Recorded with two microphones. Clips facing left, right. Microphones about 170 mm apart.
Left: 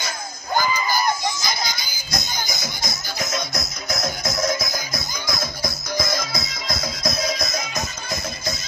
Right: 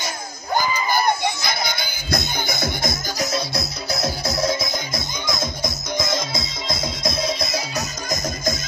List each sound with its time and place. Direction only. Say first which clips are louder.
0.9 s music: right 2 dB; 60° right (ahead or behind)
3.2 s music: right 1 dB; 35° right (ahead or behind)